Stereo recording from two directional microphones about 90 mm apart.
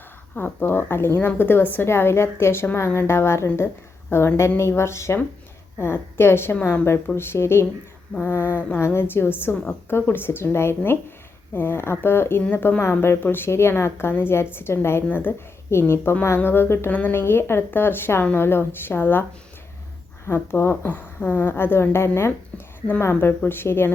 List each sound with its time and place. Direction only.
0.3 s speech: 25° left (ahead or behind)
20.2 s speech: 30° left (ahead or behind)